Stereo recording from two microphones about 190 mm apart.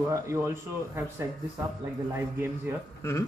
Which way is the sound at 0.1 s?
15° right (ahead or behind).